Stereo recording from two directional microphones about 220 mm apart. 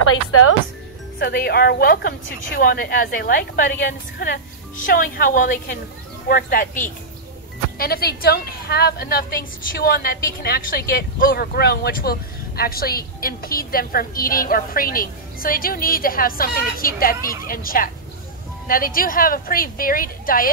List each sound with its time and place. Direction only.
0.0 s speech: 70° left (ahead or behind)
1.2 s a woman's voice: 45° left (ahead or behind)
7.7 s a woman's voice: 45° left (ahead or behind)